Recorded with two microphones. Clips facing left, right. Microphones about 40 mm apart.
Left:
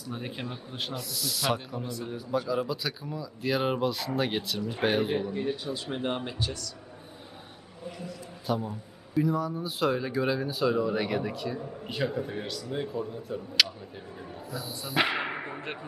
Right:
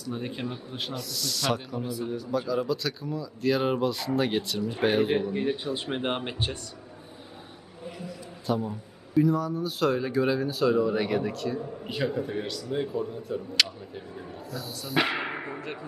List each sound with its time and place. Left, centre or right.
0.0 s speech: centre
1.8 s speech: centre
2.0 s speech: centre
5.3 s speech: right
8.0 s a sound: centre
9.1 s speech: centre
14.9 s music: centre